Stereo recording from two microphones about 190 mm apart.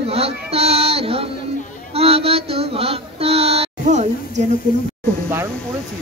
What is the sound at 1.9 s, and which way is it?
Child singing, 30° right (ahead or behind).